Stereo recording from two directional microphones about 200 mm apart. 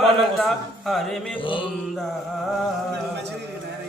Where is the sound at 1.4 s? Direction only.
25° left (ahead or behind).